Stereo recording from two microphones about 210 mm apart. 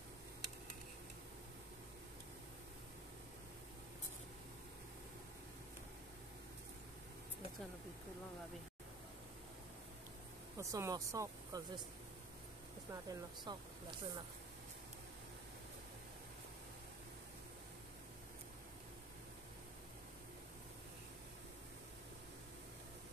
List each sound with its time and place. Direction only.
10.6 s speech: 15° right (ahead or behind)
12.9 s speech: 20° right (ahead or behind)